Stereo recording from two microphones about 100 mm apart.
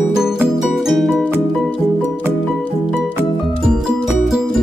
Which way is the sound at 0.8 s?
Centre (ahead or behind).